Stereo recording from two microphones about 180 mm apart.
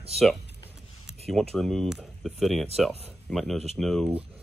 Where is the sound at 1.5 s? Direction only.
Centre (ahead or behind).